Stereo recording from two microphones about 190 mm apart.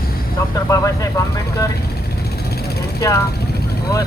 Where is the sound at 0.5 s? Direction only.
15° left (ahead or behind).